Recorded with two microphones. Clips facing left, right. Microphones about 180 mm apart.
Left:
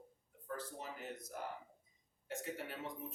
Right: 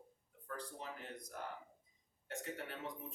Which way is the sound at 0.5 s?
5° left (ahead or behind).